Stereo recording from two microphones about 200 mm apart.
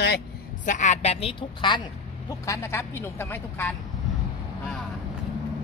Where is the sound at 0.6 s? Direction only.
40° left (ahead or behind).